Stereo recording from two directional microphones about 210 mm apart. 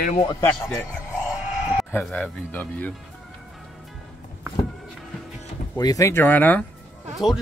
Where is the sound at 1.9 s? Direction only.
10° left (ahead or behind).